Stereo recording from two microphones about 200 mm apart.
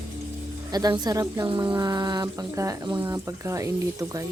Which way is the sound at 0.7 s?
20° right (ahead or behind).